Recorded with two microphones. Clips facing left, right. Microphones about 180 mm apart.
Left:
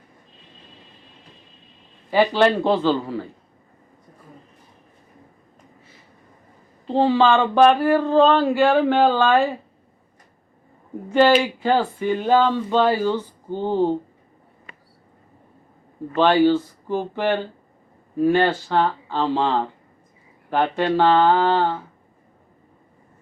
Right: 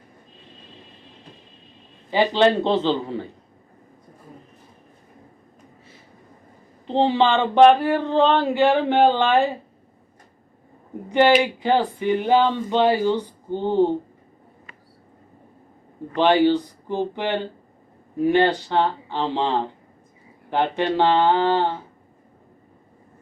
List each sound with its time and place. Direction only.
2.0 s speech: 20° right (ahead or behind)
6.8 s speech: 20° right (ahead or behind)
11.1 s speech: 20° right (ahead or behind)
16.1 s speech: 20° right (ahead or behind)